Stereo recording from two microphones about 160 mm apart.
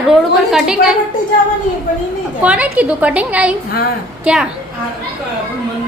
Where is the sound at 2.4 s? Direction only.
10° right (ahead or behind).